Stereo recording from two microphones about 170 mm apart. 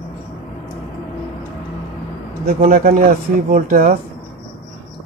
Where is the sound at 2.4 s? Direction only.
50° right (ahead or behind).